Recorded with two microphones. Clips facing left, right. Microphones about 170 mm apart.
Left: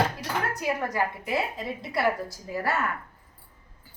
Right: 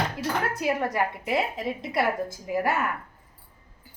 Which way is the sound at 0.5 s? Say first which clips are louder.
Right 1 dB; 25° right (ahead or behind).